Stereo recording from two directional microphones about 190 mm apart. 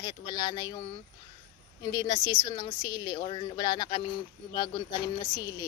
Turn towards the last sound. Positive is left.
turn(degrees=20)  # may be behind; listen again after turning